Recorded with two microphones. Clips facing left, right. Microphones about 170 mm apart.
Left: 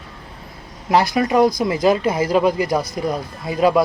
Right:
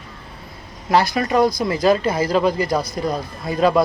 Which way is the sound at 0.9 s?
15° left (ahead or behind).